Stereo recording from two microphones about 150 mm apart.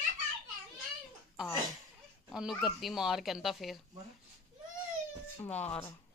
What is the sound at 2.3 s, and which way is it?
Speech, 5° right (ahead or behind).